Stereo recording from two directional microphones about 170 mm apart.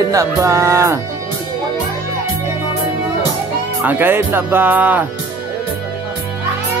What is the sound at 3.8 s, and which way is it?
Music, 10° right (ahead or behind).